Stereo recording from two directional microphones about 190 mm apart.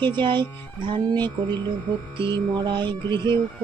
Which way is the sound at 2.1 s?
25° right (ahead or behind).